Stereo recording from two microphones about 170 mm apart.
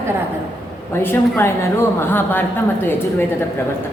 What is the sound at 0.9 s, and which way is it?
Speech, 15° left (ahead or behind).